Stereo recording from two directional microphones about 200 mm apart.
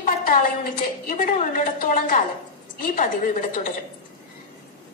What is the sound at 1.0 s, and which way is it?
A woman's voice, 40° left (ahead or behind).